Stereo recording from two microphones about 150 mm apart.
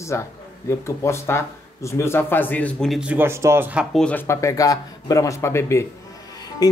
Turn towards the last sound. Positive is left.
turn(degrees=25)  # may be behind; listen again after turning